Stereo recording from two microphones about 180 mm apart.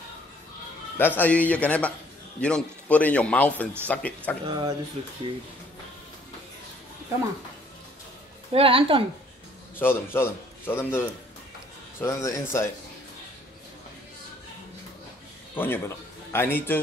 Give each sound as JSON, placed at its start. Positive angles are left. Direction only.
{"t": 0.9, "sound": "a man's voice", "side_deg": 10}
{"t": 4.5, "sound": "a woman's voice", "side_deg": -25}
{"t": 5.0, "sound": "speech", "side_deg": -35}
{"t": 8.5, "sound": "a woman's voice", "side_deg": -30}
{"t": 9.8, "sound": "a man's voice", "side_deg": 10}
{"t": 15.5, "sound": "a man's voice", "side_deg": 10}